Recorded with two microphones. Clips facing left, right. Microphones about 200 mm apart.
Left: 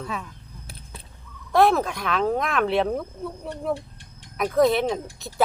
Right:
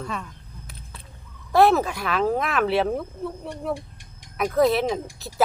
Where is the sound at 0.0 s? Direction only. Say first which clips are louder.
Even; 5° left (ahead or behind).